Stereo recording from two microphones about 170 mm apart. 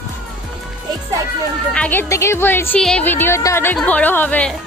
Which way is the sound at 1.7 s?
5° left (ahead or behind).